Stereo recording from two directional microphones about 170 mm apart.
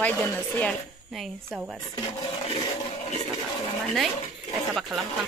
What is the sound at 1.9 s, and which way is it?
Speech, 25° left (ahead or behind).